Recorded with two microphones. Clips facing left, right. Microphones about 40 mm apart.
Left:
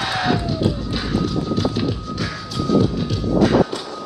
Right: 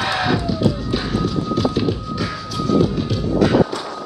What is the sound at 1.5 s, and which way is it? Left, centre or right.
Music, right.